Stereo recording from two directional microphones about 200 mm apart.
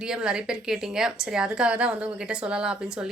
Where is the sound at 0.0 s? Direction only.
5° right (ahead or behind).